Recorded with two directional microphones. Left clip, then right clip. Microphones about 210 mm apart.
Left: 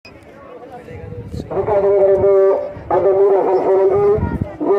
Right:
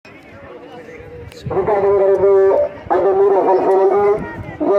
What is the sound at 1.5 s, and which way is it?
Music, 40° right (ahead or behind).